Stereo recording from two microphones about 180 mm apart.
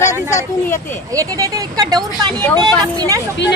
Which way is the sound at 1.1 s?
20° right (ahead or behind).